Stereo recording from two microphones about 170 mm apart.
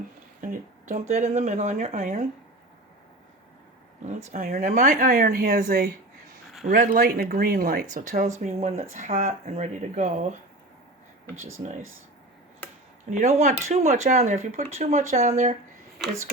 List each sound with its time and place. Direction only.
0.4 s a sound: 50° right (ahead or behind)
1.4 s speech: 45° right (ahead or behind)
2.0 s speech: 55° right (ahead or behind)
4.0 s speech: 45° right (ahead or behind)
4.4 s speech: 55° right (ahead or behind)
13.1 s speech: 40° right (ahead or behind)